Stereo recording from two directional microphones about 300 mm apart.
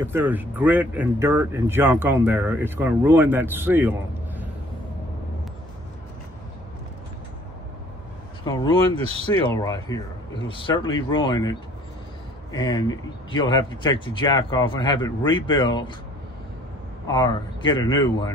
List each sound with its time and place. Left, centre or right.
0.0 s speech: centre
8.5 s speech: centre
8.9 s speech: centre
9.6 s speech: centre
12.5 s speech: centre
17.1 s speech: centre